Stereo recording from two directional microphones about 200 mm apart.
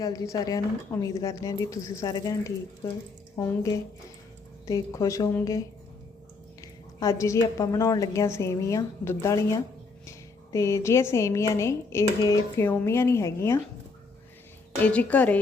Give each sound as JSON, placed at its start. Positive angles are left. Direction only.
{"t": 0.0, "sound": "speech", "side_deg": 15}
{"t": 14.8, "sound": "speech", "side_deg": 5}